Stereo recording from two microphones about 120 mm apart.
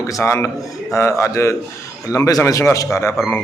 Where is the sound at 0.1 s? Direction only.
25° left (ahead or behind).